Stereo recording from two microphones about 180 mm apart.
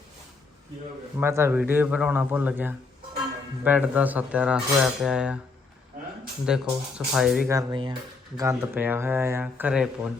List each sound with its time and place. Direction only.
1.2 s speech: 15° right (ahead or behind)
6.5 s speech: 5° right (ahead or behind)
7.5 s speech: 25° right (ahead or behind)
8.4 s speech: 15° right (ahead or behind)